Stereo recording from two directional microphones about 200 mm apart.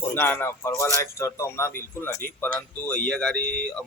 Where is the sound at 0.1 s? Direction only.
10° left (ahead or behind).